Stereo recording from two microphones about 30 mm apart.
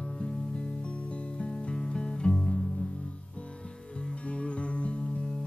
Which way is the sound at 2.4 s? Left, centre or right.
Left.